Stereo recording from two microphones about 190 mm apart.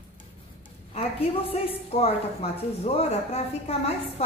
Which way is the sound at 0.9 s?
30° left (ahead or behind).